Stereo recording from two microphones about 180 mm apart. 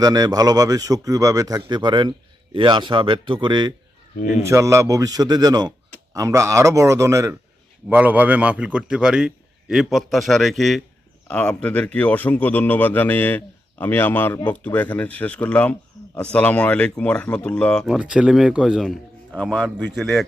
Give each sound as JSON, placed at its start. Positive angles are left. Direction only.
{"t": 0.0, "sound": "speech", "side_deg": -20}
{"t": 4.2, "sound": "speech", "side_deg": 45}
{"t": 4.4, "sound": "a man's voice", "side_deg": -15}
{"t": 15.9, "sound": "bird", "side_deg": 0}
{"t": 16.3, "sound": "speech", "side_deg": 10}